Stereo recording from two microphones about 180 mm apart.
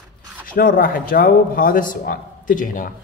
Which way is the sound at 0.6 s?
55° left (ahead or behind).